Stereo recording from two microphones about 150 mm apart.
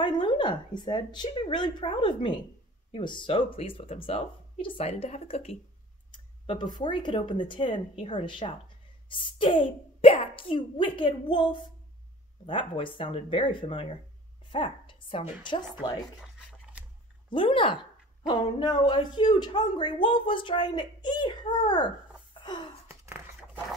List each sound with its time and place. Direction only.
0.0 s speech: 30° left (ahead or behind)
17.3 s speech: 35° left (ahead or behind)
22.4 s gasp: 30° left (ahead or behind)
22.8 s a sound: 15° right (ahead or behind)